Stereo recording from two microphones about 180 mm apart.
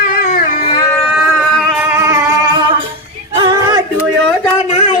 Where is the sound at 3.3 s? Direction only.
25° right (ahead or behind).